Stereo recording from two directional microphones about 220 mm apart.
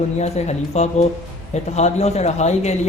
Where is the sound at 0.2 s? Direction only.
30° left (ahead or behind).